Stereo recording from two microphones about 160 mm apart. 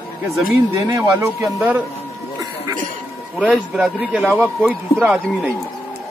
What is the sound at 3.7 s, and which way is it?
A man's voice, 5° right (ahead or behind).